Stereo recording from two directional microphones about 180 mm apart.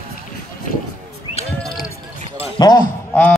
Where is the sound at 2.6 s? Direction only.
20° left (ahead or behind).